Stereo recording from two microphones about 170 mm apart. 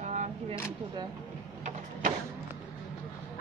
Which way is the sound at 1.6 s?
50° right (ahead or behind).